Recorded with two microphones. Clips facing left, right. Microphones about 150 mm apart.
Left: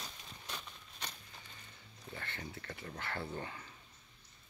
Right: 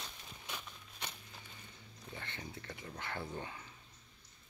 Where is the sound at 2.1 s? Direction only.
15° right (ahead or behind).